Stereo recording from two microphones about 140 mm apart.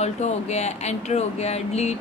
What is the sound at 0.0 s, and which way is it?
A woman's voice, 50° left (ahead or behind).